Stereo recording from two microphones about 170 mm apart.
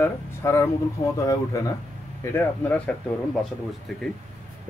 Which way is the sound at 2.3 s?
10° left (ahead or behind).